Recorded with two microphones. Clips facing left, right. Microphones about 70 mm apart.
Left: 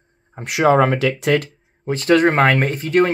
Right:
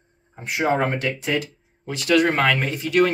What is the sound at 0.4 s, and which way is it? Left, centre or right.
Speech, left.